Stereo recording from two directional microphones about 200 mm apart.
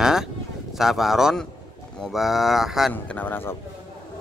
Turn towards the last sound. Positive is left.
turn(degrees=10)  # may be behind; listen again after turning